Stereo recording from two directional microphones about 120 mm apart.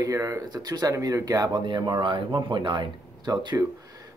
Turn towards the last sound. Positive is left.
turn(degrees=-35)  # may be behind; listen again after turning